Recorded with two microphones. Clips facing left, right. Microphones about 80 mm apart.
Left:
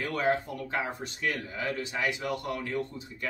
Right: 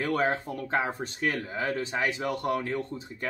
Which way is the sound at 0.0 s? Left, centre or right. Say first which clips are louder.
Right 1 dB; right.